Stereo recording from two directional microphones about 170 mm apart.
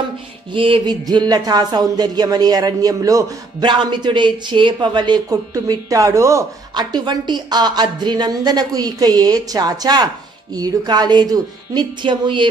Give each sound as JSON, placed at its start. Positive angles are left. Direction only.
{"t": 0.6, "sound": "speech", "side_deg": -30}